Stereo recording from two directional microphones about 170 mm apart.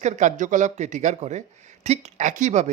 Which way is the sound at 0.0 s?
45° right (ahead or behind).